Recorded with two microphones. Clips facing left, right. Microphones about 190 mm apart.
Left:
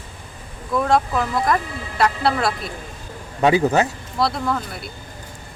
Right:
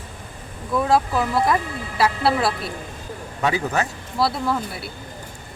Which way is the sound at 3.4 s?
25° left (ahead or behind).